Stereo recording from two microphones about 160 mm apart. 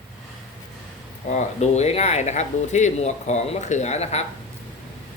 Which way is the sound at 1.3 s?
45° left (ahead or behind).